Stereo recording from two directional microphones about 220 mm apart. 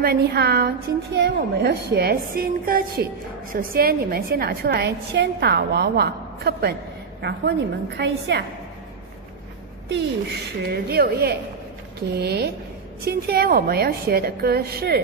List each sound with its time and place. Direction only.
0.0 s a woman's voice: 45° right (ahead or behind)
9.9 s a woman's voice: 45° right (ahead or behind)